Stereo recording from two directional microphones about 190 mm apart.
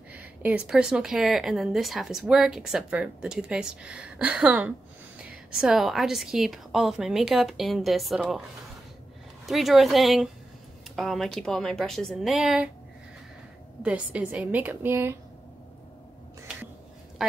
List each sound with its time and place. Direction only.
0.1 s speech: 10° right (ahead or behind)
9.5 s speech: centre (ahead or behind)
13.8 s a woman's voice: 5° right (ahead or behind)
17.2 s speech: centre (ahead or behind)